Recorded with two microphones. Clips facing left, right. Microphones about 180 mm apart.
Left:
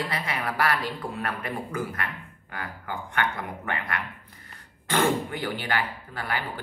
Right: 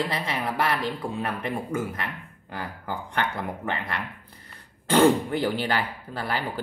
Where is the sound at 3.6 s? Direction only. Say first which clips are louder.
Right 1 dB; 25° right (ahead or behind).